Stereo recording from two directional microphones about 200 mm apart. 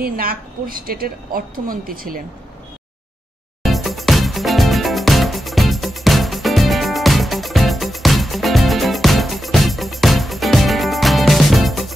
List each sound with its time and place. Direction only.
0.0 s a woman's voice: 45° right (ahead or behind)
3.6 s music: centre (ahead or behind)